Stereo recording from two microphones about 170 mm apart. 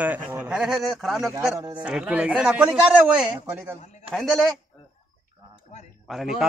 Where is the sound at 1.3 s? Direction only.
20° right (ahead or behind).